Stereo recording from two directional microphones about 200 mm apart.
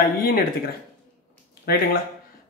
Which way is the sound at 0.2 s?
45° left (ahead or behind).